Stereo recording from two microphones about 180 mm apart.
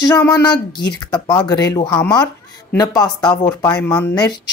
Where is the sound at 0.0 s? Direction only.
20° left (ahead or behind).